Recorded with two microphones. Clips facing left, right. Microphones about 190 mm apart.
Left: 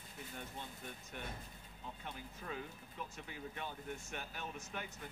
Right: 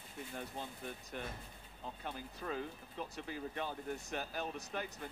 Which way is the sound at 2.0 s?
35° right (ahead or behind).